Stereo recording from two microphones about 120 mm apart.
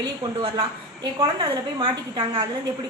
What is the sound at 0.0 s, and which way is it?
A woman's voice, 35° right (ahead or behind).